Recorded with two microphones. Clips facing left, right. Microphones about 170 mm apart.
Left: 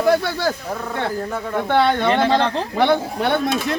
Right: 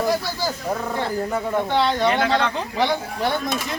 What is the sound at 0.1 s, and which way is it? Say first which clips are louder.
Speech: left 5 dB; 60° left (ahead or behind).